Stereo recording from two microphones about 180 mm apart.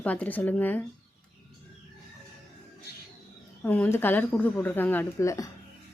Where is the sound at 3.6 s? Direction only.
10° left (ahead or behind).